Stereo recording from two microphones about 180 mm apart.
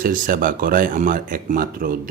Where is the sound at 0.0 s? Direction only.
50° right (ahead or behind).